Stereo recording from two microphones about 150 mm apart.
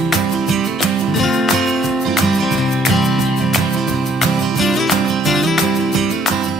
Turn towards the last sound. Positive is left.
turn(degrees=0)  # may be behind; listen again after turning